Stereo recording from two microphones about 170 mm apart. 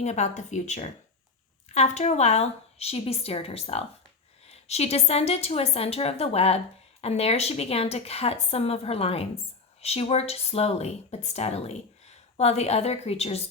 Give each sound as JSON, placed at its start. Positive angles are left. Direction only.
{"t": 0.0, "sound": "speech", "side_deg": 40}